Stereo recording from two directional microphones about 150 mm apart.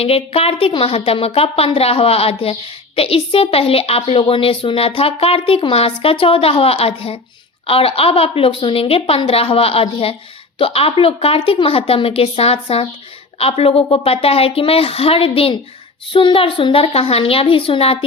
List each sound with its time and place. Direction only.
0.0 s a woman's voice: 40° left (ahead or behind)